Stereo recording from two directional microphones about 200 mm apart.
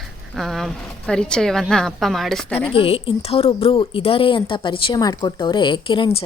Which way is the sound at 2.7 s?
30° left (ahead or behind).